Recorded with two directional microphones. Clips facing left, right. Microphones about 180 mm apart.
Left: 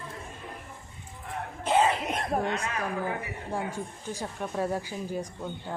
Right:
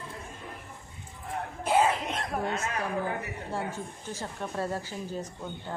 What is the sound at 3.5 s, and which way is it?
A woman's voice, 15° left (ahead or behind).